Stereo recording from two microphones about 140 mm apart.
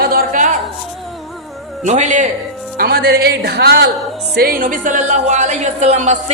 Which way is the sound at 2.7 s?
90° right.